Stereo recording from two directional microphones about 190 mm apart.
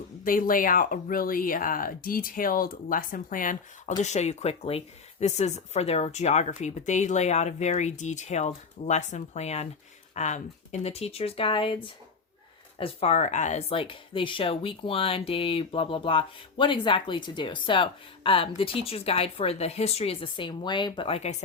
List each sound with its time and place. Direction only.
0.3 s speech: 45° left (ahead or behind)